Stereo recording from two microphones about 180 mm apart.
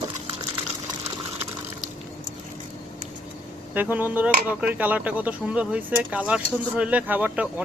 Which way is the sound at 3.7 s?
10° right (ahead or behind).